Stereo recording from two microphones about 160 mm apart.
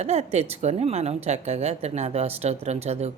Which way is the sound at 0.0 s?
40° right (ahead or behind).